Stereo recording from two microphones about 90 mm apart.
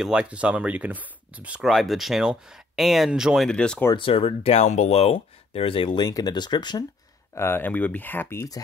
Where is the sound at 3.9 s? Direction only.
85° left; by 6.1 s 65° left (ahead or behind).